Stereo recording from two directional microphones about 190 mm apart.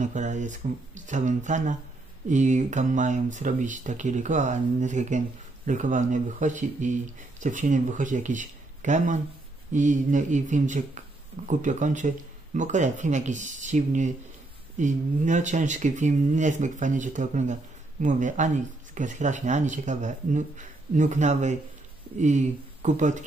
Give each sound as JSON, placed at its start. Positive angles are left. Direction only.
{"t": 0.0, "sound": "speech", "side_deg": -40}